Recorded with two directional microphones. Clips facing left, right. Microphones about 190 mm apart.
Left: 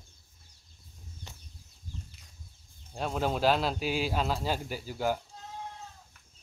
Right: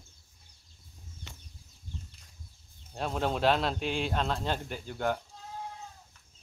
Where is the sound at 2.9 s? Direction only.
Centre (ahead or behind).